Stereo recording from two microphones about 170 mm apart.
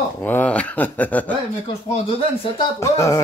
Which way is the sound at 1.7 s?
35° left (ahead or behind).